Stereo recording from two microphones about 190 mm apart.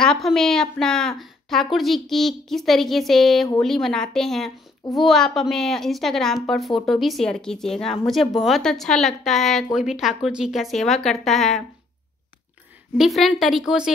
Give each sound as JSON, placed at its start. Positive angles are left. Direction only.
{"t": 0.0, "sound": "a woman's voice", "side_deg": 0}
{"t": 12.9, "sound": "a woman's voice", "side_deg": 0}